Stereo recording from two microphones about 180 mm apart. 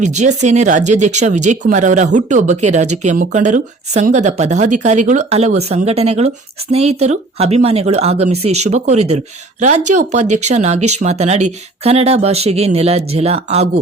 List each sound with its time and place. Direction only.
0.0 s speech: 40° right (ahead or behind)